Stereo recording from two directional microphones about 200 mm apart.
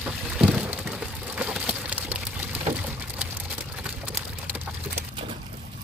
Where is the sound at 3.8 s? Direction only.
5° right (ahead or behind).